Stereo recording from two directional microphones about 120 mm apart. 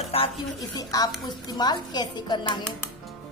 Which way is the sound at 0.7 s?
30° left (ahead or behind).